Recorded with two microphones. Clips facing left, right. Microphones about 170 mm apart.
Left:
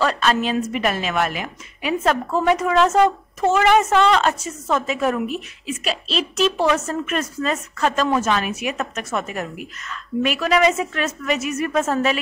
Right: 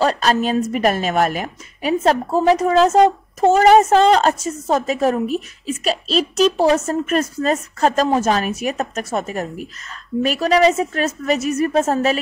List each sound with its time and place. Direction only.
0.0 s a woman's voice: 35° right (ahead or behind)